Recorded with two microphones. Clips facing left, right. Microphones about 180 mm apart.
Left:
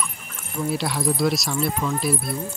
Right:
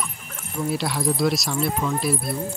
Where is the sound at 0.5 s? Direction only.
Centre (ahead or behind).